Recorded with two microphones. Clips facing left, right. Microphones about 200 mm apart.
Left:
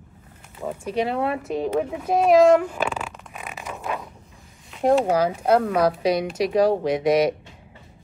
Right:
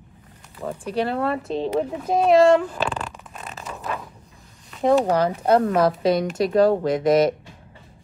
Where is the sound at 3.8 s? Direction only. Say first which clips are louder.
Left 1 dB; centre (ahead or behind).